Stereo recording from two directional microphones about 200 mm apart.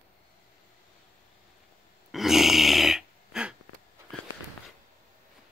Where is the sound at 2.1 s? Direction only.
Centre (ahead or behind).